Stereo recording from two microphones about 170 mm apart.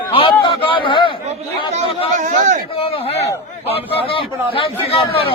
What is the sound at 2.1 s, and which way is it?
Speech, 45° right (ahead or behind).